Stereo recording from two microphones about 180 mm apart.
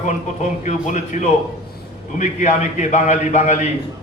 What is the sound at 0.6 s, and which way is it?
A man's voice, 40° left (ahead or behind).